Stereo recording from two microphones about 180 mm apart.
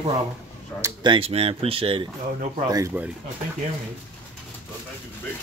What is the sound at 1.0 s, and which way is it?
Speech, 30° right (ahead or behind).